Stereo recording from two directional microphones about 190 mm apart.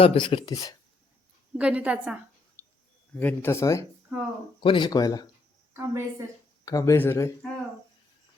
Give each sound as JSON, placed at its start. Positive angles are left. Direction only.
{"t": 0.0, "sound": "speech", "side_deg": 30}
{"t": 1.5, "sound": "a woman's voice", "side_deg": -5}
{"t": 3.2, "sound": "speech", "side_deg": 10}
{"t": 4.6, "sound": "speech", "side_deg": 25}
{"t": 5.7, "sound": "a woman's voice", "side_deg": -15}
{"t": 6.7, "sound": "speech", "side_deg": 15}